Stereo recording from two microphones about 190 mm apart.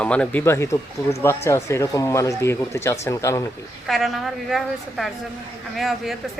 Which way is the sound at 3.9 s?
Centre (ahead or behind).